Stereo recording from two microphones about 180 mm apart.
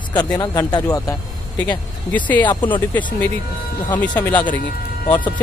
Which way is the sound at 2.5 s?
25° left (ahead or behind).